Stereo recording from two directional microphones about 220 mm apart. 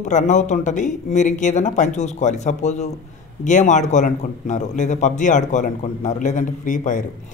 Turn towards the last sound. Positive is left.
turn(degrees=35)  # may be behind; listen again after turning